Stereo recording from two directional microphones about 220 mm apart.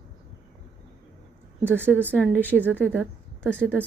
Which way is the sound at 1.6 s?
10° right (ahead or behind).